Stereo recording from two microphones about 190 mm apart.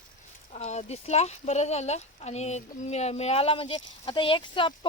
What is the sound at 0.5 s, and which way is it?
Speech, 35° left (ahead or behind).